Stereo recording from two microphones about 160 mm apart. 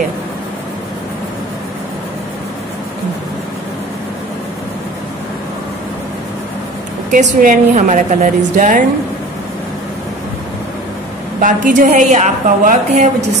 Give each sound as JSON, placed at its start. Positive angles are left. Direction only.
{"t": 7.2, "sound": "a woman's voice", "side_deg": -60}
{"t": 11.4, "sound": "a woman's voice", "side_deg": -55}